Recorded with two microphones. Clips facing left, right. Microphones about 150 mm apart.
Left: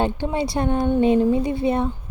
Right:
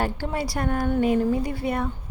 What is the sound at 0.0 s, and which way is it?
Speech, 20° left (ahead or behind).